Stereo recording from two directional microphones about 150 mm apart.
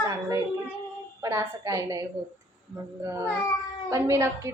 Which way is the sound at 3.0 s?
20° right (ahead or behind).